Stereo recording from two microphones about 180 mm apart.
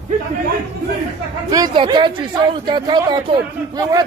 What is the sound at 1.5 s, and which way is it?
Speech, 25° right (ahead or behind).